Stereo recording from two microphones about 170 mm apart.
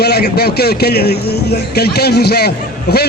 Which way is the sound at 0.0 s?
70° left (ahead or behind).